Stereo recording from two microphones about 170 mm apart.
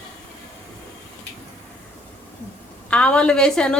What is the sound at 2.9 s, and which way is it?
Speech, 5° left (ahead or behind).